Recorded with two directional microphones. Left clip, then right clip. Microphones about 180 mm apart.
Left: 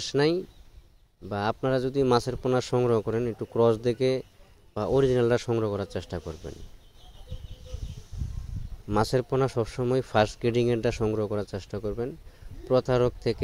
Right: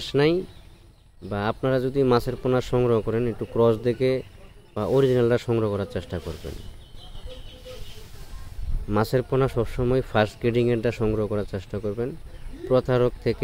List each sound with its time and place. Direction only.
0.0 s a man's voice: 45° left (ahead or behind)
8.8 s a man's voice: 45° left (ahead or behind)